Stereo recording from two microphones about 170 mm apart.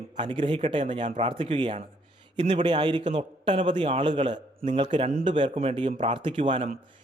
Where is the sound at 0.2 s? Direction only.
30° right (ahead or behind).